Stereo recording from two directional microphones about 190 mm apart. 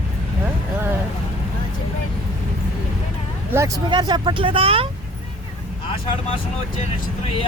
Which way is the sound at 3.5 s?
15° right (ahead or behind).